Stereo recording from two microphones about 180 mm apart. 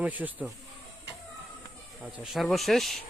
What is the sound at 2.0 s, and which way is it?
Speech, 5° right (ahead or behind).